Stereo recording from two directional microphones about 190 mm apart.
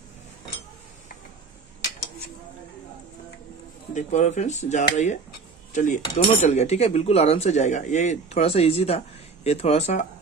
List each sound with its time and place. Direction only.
3.9 s a man's voice: 40° left (ahead or behind)